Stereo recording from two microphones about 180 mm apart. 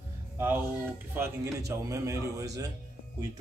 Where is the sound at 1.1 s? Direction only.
15° right (ahead or behind).